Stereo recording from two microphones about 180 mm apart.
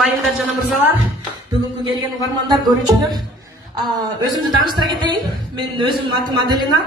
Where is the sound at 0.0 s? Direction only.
Centre (ahead or behind).